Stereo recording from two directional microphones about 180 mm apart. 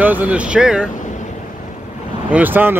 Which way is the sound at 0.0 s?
10° right (ahead or behind).